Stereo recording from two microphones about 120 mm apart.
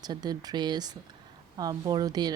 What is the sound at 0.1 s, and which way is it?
Speech, 35° right (ahead or behind).